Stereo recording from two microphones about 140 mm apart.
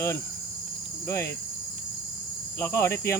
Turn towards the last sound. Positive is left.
turn(degrees=20)  # may be behind; listen again after turning